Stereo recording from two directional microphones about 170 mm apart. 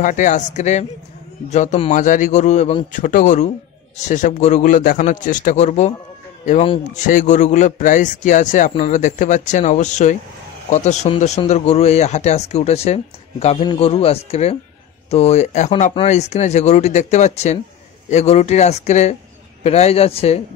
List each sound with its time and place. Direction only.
0.0 s a man's voice: 50° left (ahead or behind)
7.1 s a man's voice: 50° left (ahead or behind)